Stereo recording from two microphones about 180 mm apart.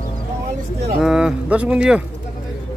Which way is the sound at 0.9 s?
5° right (ahead or behind).